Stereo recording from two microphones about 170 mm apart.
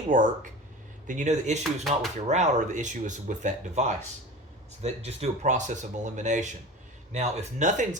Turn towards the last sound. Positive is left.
turn(degrees=-45)  # may be behind; listen again after turning